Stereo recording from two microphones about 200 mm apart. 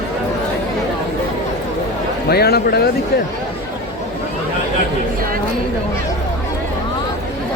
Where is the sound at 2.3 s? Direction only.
50° left (ahead or behind).